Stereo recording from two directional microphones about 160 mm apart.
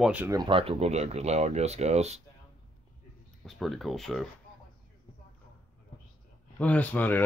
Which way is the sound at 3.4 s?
Centre (ahead or behind).